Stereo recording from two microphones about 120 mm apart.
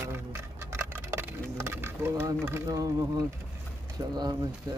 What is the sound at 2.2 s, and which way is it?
Speech, 25° right (ahead or behind).